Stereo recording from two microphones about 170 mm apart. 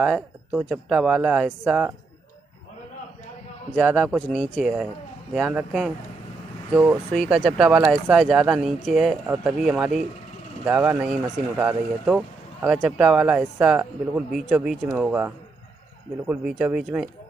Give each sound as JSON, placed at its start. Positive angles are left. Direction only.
{"t": 0.0, "sound": "speech", "side_deg": -5}
{"t": 3.8, "sound": "speech", "side_deg": -5}
{"t": 6.7, "sound": "speech", "side_deg": -15}
{"t": 7.2, "sound": "speech", "side_deg": 0}